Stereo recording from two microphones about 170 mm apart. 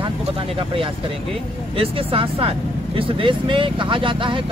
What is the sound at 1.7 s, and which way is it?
Speech, 35° right (ahead or behind).